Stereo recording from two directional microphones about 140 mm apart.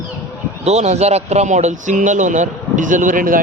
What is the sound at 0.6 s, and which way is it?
Speech, 50° right (ahead or behind).